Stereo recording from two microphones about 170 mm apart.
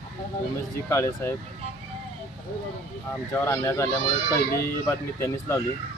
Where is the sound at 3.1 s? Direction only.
15° left (ahead or behind).